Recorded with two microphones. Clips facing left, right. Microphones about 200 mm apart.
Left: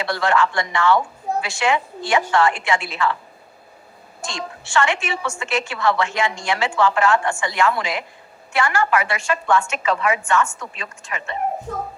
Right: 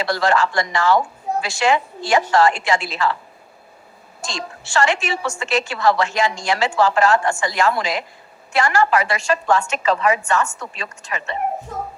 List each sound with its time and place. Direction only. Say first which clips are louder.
0.0 s a woman's voice: right 1 dB; 35° right (ahead or behind)
4.7 s a woman's voice: right 2 dB; 40° right (ahead or behind)